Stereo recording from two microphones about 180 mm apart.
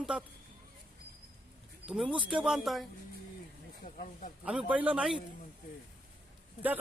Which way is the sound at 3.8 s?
40° left (ahead or behind).